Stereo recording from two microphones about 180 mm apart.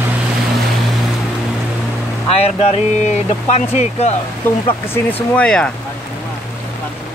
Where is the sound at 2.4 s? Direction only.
35° left (ahead or behind).